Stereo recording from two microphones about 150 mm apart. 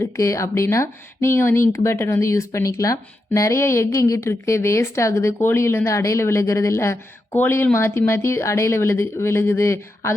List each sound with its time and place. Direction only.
0.0 s speech: 20° left (ahead or behind)